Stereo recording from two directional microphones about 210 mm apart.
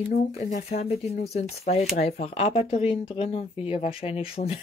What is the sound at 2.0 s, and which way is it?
Speech, 30° left (ahead or behind).